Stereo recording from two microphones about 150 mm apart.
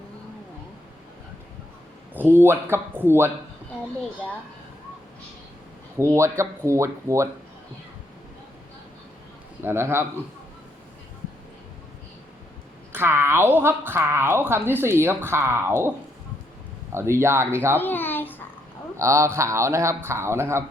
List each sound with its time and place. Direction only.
2.1 s a woman's voice: 15° right (ahead or behind)
6.0 s speech: 20° right (ahead or behind)
9.6 s a woman's voice: 15° right (ahead or behind)
12.9 s a woman's voice: 15° right (ahead or behind)
16.9 s a woman's voice: 15° right (ahead or behind)
17.7 s babbling: 15° left (ahead or behind)
18.9 s speech: 20° right (ahead or behind)